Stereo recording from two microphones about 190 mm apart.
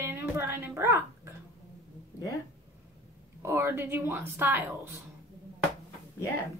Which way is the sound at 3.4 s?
15° right (ahead or behind).